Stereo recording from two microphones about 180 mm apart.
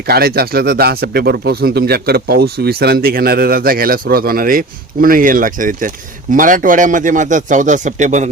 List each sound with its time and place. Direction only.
0.1 s speech: 60° right (ahead or behind); by 8.3 s 40° right (ahead or behind)